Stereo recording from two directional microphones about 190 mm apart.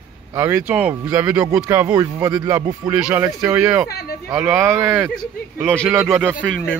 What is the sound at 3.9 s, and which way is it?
Speech, 55° left (ahead or behind).